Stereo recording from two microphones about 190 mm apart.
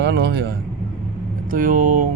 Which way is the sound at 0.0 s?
60° right (ahead or behind).